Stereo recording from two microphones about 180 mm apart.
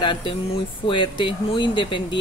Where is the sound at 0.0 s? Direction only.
25° left (ahead or behind).